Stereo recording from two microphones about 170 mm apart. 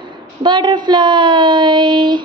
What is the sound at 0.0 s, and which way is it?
A woman's voice, 25° right (ahead or behind).